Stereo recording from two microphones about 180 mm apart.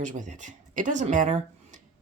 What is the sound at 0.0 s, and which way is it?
A woman's voice, 45° right (ahead or behind).